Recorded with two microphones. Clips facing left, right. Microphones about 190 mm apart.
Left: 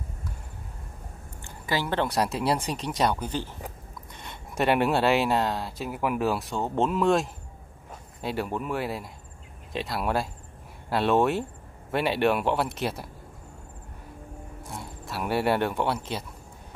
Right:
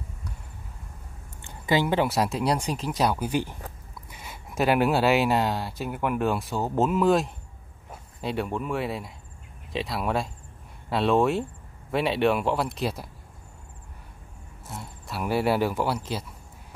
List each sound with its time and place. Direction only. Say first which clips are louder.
1.4 s a sound: right 5 dB; 20° right (ahead or behind)
2.0 s speech: right 1 dB; centre (ahead or behind)
14.7 s speech: even; centre (ahead or behind)